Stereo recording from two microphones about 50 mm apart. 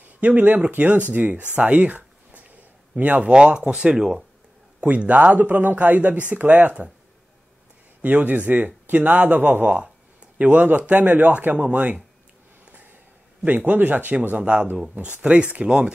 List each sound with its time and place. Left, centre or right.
0.2 s speech: right
1.5 s a sound: right
3.0 s speech: right
4.7 s speech: right
8.0 s speech: right
13.4 s speech: right